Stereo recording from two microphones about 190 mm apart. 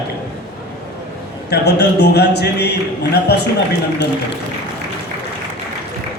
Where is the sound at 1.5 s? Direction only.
60° left (ahead or behind).